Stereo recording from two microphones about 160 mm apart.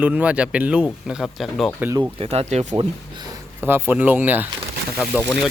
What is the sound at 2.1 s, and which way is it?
Speech, 40° right (ahead or behind).